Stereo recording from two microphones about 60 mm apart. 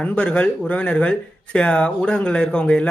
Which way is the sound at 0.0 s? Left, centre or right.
Left.